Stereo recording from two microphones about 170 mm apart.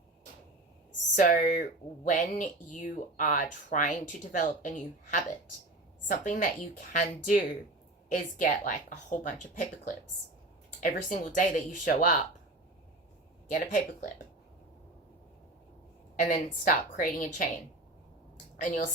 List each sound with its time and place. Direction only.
1.1 s speech: 50° left (ahead or behind)
13.5 s speech: 50° left (ahead or behind)
16.1 s speech: 45° left (ahead or behind)
18.5 s a woman's voice: 50° left (ahead or behind)